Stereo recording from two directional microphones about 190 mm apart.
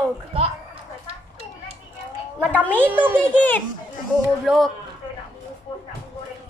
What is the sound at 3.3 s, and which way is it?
Speech, 10° left (ahead or behind).